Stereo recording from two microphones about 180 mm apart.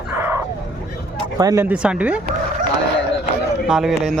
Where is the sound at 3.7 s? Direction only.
Centre (ahead or behind).